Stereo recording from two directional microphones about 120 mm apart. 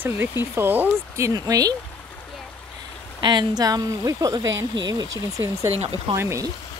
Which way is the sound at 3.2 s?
40° right (ahead or behind).